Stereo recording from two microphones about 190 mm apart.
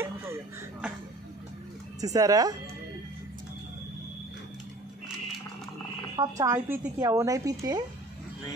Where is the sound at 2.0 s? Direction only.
20° right (ahead or behind).